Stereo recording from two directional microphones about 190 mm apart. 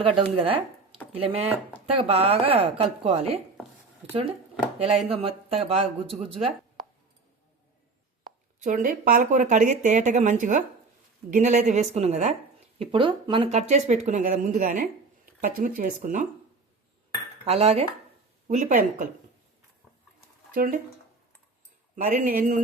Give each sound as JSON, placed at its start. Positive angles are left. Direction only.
{"t": 0.0, "sound": "speech", "side_deg": -30}
{"t": 8.5, "sound": "speech", "side_deg": -45}
{"t": 17.4, "sound": "cutlery", "side_deg": -35}
{"t": 18.4, "sound": "speech", "side_deg": -40}
{"t": 20.5, "sound": "speech", "side_deg": -50}
{"t": 22.0, "sound": "speech", "side_deg": -45}